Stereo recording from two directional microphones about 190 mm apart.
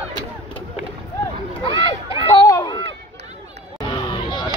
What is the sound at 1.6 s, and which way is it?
Speech, 25° left (ahead or behind).